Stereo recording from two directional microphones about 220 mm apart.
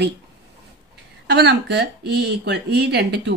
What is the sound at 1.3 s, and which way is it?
Speech, 50° right (ahead or behind).